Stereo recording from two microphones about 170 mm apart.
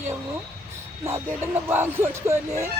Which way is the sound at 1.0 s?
15° right (ahead or behind).